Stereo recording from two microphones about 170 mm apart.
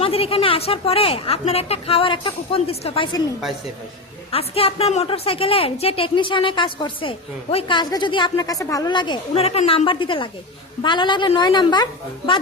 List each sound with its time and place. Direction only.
0.0 s a woman's voice: 35° left (ahead or behind)
4.3 s a woman's voice: 35° left (ahead or behind)